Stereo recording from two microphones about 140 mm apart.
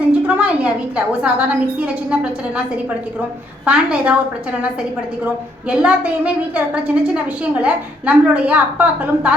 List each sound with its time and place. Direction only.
0.3 s a woman's voice: 10° right (ahead or behind)
3.7 s a woman's voice: 10° right (ahead or behind)